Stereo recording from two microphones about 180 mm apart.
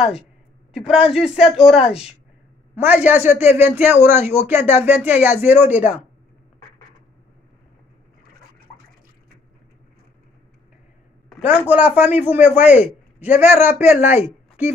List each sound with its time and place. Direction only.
1.1 s a man's voice: 5° right (ahead or behind)
1.8 s speech: 35° left (ahead or behind)
2.7 s speech: 10° right (ahead or behind)
11.2 s a sound: centre (ahead or behind)
11.7 s speech: 10° right (ahead or behind)